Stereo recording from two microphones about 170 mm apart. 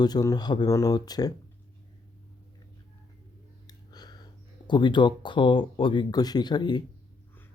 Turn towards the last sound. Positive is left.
turn(degrees=25)  # may be behind; listen again after turning